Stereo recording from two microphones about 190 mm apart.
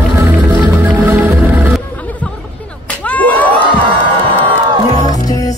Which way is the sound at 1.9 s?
10° left (ahead or behind).